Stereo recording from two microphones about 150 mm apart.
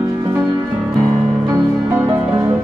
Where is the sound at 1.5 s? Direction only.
20° right (ahead or behind).